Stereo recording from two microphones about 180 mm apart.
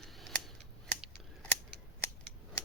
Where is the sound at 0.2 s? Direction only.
Centre (ahead or behind).